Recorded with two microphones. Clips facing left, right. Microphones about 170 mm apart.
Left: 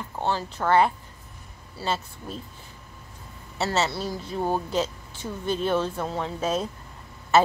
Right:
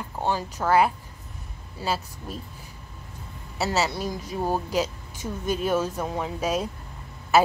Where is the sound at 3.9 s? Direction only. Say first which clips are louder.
Even; 15° right (ahead or behind).